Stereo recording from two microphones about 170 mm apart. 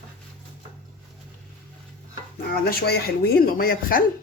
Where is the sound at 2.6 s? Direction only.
65° left (ahead or behind).